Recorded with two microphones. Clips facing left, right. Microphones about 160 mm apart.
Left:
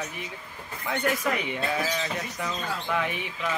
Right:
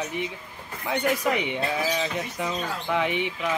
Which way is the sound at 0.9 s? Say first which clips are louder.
Right 3 dB; 20° right (ahead or behind).